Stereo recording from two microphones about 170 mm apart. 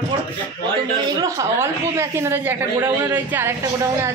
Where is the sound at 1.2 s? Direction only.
20° right (ahead or behind).